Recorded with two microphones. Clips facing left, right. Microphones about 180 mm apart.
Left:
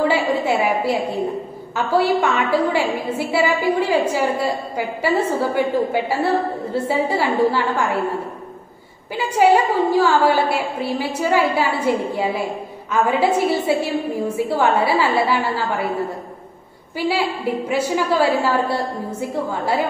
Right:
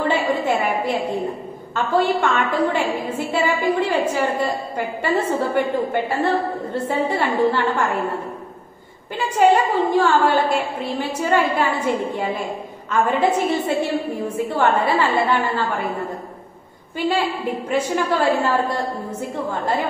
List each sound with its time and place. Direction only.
0.1 s a sound: 10° left (ahead or behind)
1.8 s a woman's voice: 10° left (ahead or behind)
9.1 s a woman's voice: 10° left (ahead or behind)
12.9 s a woman's voice: 10° left (ahead or behind)
17.6 s a woman's voice: 10° left (ahead or behind)